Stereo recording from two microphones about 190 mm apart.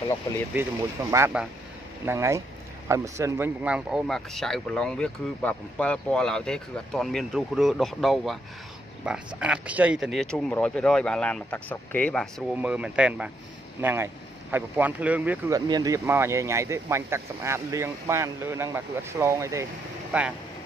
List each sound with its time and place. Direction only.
1.1 s speech: 10° right (ahead or behind)